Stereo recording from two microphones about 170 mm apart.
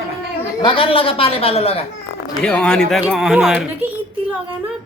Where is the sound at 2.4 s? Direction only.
5° left (ahead or behind).